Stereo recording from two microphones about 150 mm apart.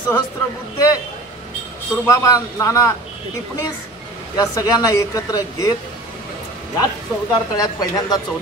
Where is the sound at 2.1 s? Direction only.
20° left (ahead or behind).